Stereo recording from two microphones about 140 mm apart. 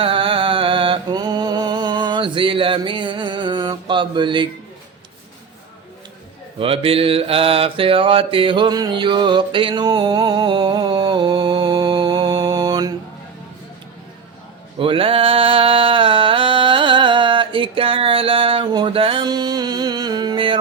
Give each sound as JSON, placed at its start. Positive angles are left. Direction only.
{"t": 0.0, "sound": "music", "side_deg": -40}
{"t": 6.6, "sound": "mantra", "side_deg": -40}
{"t": 14.8, "sound": "a sound", "side_deg": -40}